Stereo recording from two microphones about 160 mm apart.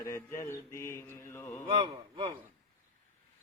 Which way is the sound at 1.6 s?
35° right (ahead or behind).